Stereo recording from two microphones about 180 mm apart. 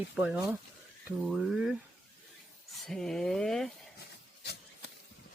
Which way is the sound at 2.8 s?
Centre (ahead or behind).